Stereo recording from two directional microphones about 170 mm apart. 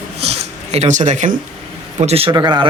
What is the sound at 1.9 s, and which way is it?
Speech, 35° right (ahead or behind).